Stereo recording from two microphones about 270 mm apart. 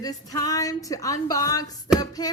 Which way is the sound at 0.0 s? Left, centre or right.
Centre.